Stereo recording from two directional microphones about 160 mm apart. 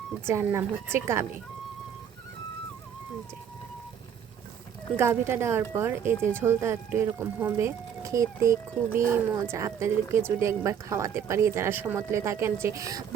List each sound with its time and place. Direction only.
0.3 s speech: 15° right (ahead or behind)
4.9 s speech: 15° right (ahead or behind)